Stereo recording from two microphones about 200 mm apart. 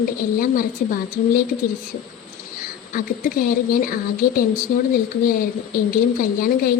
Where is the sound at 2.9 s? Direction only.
45° left (ahead or behind).